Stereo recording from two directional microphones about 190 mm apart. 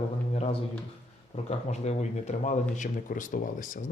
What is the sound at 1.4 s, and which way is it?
Speech, 35° left (ahead or behind).